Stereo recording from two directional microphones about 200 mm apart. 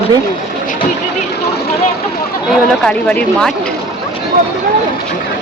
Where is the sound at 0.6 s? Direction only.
45° left (ahead or behind).